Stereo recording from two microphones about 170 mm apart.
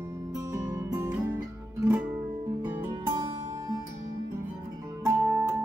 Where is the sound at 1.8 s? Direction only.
10° right (ahead or behind).